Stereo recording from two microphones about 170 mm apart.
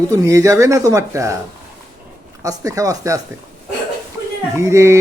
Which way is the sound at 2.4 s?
20° right (ahead or behind).